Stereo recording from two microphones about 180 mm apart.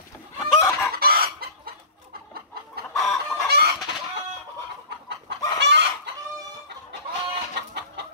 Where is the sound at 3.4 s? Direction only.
65° right (ahead or behind).